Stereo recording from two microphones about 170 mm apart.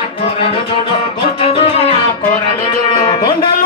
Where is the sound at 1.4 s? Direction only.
35° left (ahead or behind).